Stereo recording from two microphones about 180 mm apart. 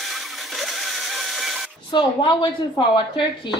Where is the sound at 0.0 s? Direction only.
Centre (ahead or behind).